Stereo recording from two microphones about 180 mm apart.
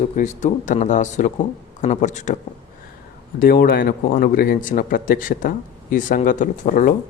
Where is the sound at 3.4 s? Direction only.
55° left (ahead or behind).